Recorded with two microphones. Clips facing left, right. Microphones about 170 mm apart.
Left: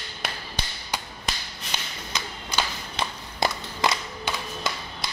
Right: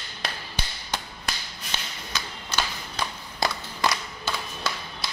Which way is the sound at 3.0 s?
20° left (ahead or behind).